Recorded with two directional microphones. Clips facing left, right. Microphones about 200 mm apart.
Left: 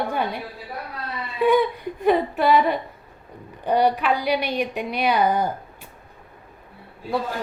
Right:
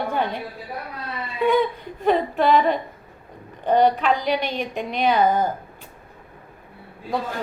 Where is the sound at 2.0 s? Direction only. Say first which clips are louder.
Even; 10° left (ahead or behind).